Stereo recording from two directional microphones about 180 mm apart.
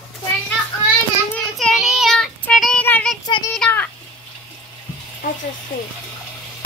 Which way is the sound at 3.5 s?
5° left (ahead or behind).